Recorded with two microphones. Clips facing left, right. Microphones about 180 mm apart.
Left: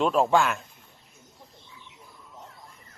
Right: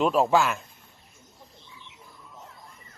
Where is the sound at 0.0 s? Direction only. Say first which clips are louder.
Even; 5° right (ahead or behind).